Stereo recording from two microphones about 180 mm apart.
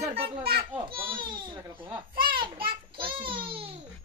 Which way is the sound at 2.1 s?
55° right (ahead or behind).